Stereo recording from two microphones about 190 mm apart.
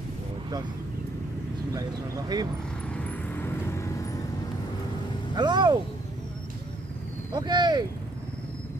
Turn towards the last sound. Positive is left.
turn(degrees=-20)  # may be behind; listen again after turning